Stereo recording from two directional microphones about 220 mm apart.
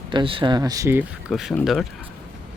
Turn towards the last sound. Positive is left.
turn(degrees=0)  # may be behind; listen again after turning